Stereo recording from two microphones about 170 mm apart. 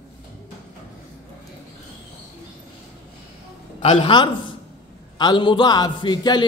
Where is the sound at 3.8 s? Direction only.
35° left (ahead or behind).